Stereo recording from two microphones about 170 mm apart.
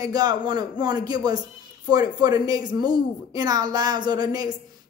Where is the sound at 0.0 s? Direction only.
20° right (ahead or behind).